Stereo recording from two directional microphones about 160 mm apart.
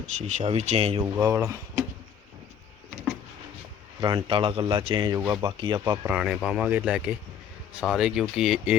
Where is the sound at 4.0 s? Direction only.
30° right (ahead or behind).